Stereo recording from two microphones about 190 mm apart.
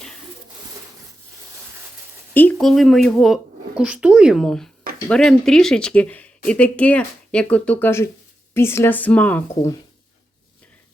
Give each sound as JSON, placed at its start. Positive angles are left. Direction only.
{"t": 2.3, "sound": "speech", "side_deg": 10}